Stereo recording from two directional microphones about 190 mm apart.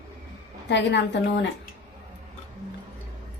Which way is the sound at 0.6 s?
70° left (ahead or behind).